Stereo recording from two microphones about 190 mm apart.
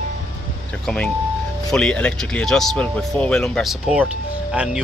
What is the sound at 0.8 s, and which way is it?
Speech, 5° left (ahead or behind).